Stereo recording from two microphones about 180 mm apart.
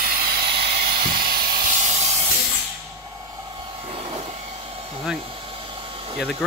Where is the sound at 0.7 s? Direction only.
55° right (ahead or behind).